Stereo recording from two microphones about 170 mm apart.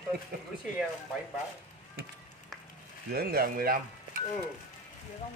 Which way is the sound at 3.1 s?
60° right (ahead or behind).